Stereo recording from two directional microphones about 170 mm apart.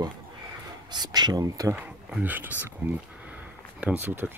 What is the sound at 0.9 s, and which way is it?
Speech, 25° right (ahead or behind).